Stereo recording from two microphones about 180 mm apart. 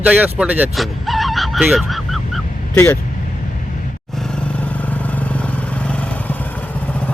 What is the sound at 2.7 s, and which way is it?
Speech, 15° left (ahead or behind).